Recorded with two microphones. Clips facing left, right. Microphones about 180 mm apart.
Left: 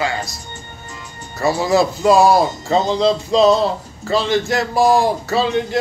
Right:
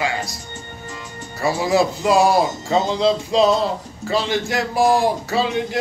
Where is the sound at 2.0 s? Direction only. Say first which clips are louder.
Left 5 dB; 40° left (ahead or behind).